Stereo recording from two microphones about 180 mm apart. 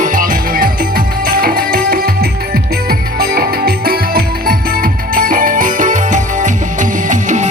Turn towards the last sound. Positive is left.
turn(degrees=-45)  # may be behind; listen again after turning